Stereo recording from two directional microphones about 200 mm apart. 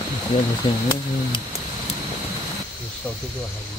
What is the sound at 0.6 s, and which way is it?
Speech, 25° left (ahead or behind).